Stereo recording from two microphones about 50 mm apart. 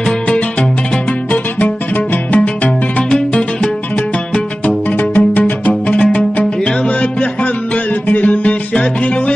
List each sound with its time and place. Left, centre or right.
1.3 s music: left
4.6 s music: left
6.6 s music: left